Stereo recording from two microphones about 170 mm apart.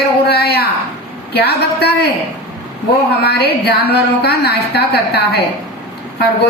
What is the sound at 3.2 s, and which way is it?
A woman's voice, 70° left (ahead or behind).